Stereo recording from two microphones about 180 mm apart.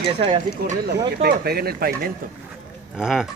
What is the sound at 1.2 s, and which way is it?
Speech, 60° right (ahead or behind).